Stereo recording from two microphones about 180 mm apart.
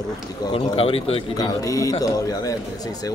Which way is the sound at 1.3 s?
20° left (ahead or behind).